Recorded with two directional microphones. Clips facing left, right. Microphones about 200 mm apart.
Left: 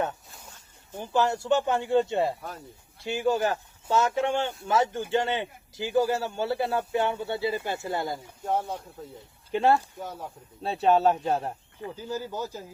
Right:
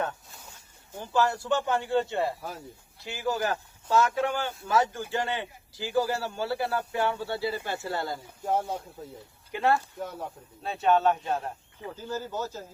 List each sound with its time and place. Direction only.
0.9 s speech: 20° left (ahead or behind)
2.4 s speech: centre (ahead or behind)
3.1 s speech: 25° left (ahead or behind)
8.4 s speech: centre (ahead or behind)
9.1 s speech: 25° left (ahead or behind)
10.0 s speech: centre (ahead or behind)
10.6 s speech: 35° left (ahead or behind)
11.9 s speech: 10° left (ahead or behind)